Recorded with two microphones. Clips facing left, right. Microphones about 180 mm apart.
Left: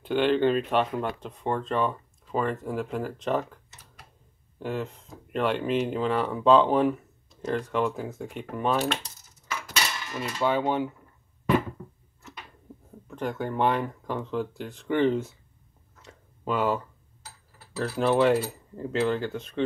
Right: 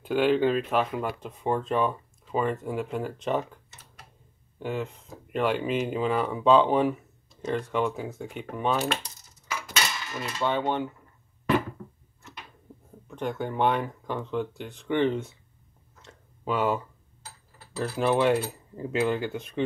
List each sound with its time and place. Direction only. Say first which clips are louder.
0.0 s speech: even; 5° right (ahead or behind)
4.6 s speech: even; centre (ahead or behind)
9.7 s cutlery: even; 5° right (ahead or behind)
10.3 s speech: left 2 dB; 5° left (ahead or behind)
13.1 s speech: even; centre (ahead or behind)
16.0 s a sound: left 1 dB; centre (ahead or behind)
17.7 s speech: left 1 dB; centre (ahead or behind)
18.9 s speech: even; 10° right (ahead or behind)